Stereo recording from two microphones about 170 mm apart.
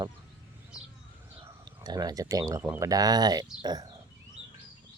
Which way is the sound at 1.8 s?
25° right (ahead or behind).